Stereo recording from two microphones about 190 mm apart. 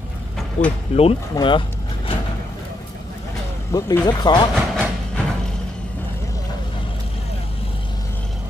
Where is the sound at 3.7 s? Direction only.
15° left (ahead or behind).